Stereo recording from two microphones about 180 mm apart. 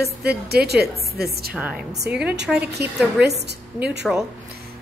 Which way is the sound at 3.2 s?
65° right (ahead or behind).